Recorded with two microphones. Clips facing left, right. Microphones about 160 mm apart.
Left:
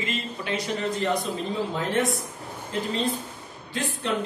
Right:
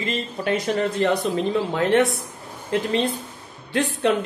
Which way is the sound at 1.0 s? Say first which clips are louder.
Right 6 dB; 65° right (ahead or behind).